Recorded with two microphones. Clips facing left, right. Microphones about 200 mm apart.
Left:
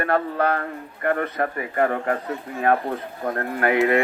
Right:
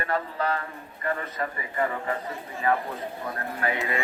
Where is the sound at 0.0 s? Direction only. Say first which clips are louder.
Left 7 dB; 60° left (ahead or behind).